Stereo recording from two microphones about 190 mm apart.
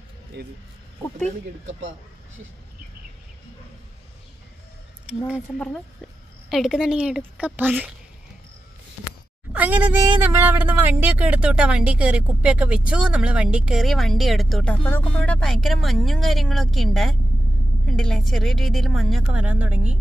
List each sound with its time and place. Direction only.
0.4 s speech: 60° right (ahead or behind)
1.7 s speech: 90° right
5.0 s speech: 5° right (ahead or behind)
6.5 s speech: centre (ahead or behind)
9.5 s a sound: 10° right (ahead or behind)
10.3 s speech: 10° right (ahead or behind)